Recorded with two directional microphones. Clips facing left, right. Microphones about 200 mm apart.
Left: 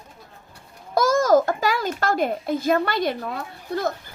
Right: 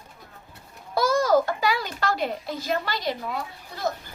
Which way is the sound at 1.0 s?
45° left (ahead or behind).